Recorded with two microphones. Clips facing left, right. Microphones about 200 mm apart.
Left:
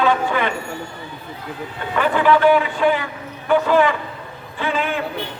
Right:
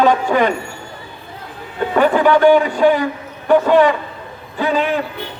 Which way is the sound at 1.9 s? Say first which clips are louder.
Right 4 dB; 40° right (ahead or behind).